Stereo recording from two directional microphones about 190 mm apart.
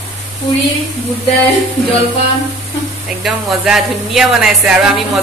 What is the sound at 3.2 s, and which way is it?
A woman's voice, centre (ahead or behind).